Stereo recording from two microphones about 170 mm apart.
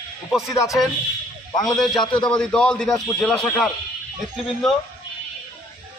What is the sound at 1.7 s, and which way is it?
Speech, centre (ahead or behind).